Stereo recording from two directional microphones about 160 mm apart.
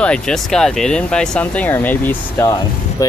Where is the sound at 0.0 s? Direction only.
5° left (ahead or behind).